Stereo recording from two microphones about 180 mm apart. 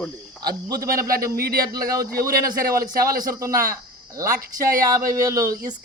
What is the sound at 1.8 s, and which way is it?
Speech, 20° right (ahead or behind).